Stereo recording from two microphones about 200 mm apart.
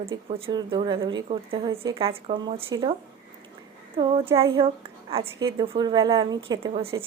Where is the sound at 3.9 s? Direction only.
25° right (ahead or behind).